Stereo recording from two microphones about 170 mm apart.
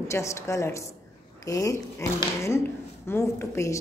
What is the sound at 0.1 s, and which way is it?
A woman's voice, 15° left (ahead or behind).